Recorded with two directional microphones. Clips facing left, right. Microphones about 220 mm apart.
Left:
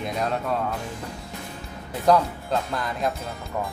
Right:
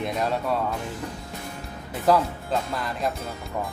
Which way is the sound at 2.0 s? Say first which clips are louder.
Left 1 dB; 5° right (ahead or behind).